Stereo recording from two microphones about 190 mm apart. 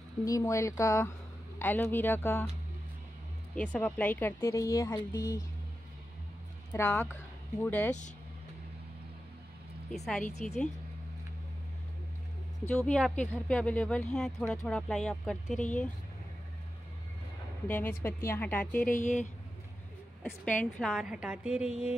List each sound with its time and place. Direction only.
0.2 s speech: 15° left (ahead or behind)
3.5 s speech: 5° left (ahead or behind)
6.7 s speech: 15° left (ahead or behind)
9.8 s speech: centre (ahead or behind)
12.6 s speech: 5° left (ahead or behind)
17.6 s speech: 10° left (ahead or behind)
18.9 s speech: 40° left (ahead or behind)
20.2 s speech: 10° left (ahead or behind)